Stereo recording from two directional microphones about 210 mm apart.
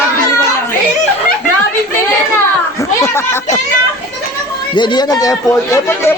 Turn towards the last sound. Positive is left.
turn(degrees=15)  # may be behind; listen again after turning